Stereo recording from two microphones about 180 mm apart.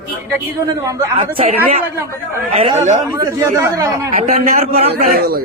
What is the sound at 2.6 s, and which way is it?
Speech, 35° right (ahead or behind).